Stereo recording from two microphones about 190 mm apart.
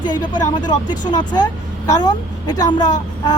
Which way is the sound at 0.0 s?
20° left (ahead or behind).